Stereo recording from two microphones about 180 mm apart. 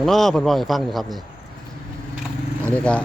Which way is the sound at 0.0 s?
Centre (ahead or behind).